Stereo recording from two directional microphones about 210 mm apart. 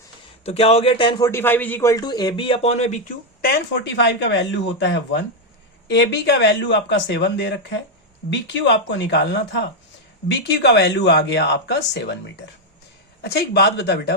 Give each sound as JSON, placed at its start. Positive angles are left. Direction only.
{"t": 0.4, "sound": "a man's voice", "side_deg": 30}
{"t": 3.4, "sound": "speech", "side_deg": 50}
{"t": 13.2, "sound": "speech", "side_deg": 50}